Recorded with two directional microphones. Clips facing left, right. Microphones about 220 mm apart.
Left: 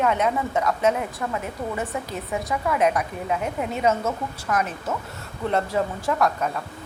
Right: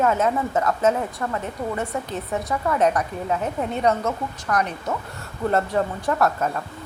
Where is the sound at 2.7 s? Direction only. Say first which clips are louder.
Right 1 dB; centre (ahead or behind).